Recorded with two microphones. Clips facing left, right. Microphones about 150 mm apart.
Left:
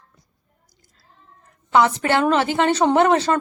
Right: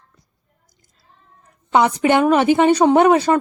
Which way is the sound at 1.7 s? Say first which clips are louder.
Right 2 dB; 15° right (ahead or behind).